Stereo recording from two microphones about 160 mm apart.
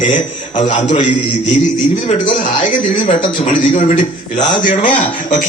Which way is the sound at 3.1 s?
30° left (ahead or behind).